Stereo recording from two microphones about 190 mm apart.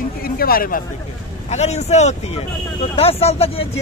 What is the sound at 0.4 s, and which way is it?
Speech, 50° left (ahead or behind).